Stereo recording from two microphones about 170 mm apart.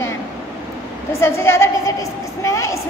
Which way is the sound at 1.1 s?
15° left (ahead or behind).